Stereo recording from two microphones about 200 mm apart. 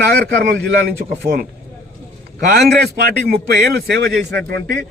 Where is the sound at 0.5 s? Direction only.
55° right (ahead or behind).